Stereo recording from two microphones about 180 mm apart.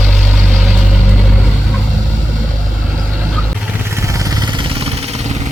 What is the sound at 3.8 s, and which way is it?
Vehicle, 15° right (ahead or behind).